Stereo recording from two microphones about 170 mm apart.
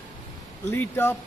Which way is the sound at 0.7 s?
15° left (ahead or behind).